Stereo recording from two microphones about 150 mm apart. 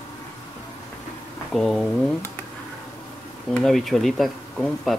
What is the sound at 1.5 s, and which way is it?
Speech, centre (ahead or behind).